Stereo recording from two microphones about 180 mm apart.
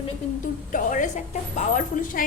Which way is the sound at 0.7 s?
45° left (ahead or behind).